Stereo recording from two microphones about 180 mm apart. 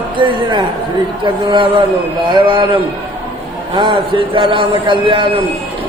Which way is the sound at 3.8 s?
25° right (ahead or behind).